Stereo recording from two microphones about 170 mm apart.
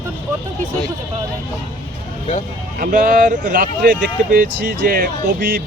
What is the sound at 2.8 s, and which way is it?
Speech, 55° right (ahead or behind).